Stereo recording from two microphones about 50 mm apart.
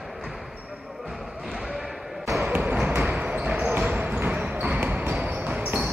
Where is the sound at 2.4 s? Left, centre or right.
Right.